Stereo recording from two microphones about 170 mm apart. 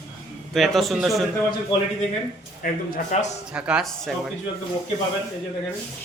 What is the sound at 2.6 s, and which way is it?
Speech, 55° left (ahead or behind).